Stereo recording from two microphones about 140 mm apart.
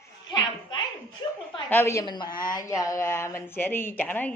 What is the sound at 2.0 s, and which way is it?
Speech, 30° left (ahead or behind).